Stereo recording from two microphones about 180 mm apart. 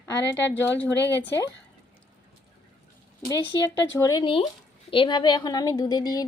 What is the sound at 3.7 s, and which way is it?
Speech, 20° left (ahead or behind).